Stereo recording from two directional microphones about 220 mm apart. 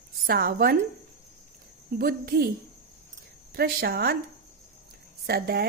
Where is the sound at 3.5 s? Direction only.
45° right (ahead or behind).